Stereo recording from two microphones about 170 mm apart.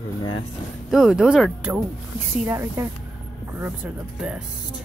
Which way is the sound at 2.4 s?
15° right (ahead or behind).